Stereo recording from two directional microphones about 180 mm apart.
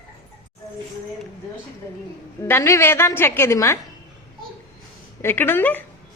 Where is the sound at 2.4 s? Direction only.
15° left (ahead or behind).